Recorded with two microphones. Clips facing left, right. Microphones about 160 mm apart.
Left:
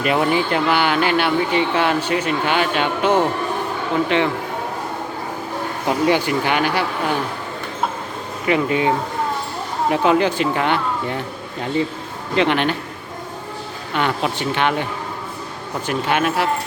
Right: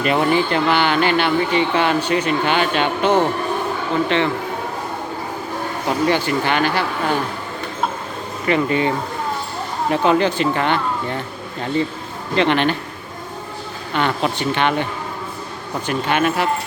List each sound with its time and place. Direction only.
0.0 s speech: 5° left (ahead or behind)
6.1 s speech: 10° left (ahead or behind)
8.4 s speech: 5° left (ahead or behind)
9.9 s speech: 5° left (ahead or behind)
12.4 s speech: 5° left (ahead or behind)
13.9 s speech: 5° left (ahead or behind)
15.9 s speech: 5° left (ahead or behind)